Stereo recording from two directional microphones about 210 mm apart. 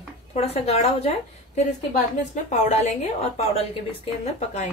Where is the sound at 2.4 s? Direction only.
35° left (ahead or behind).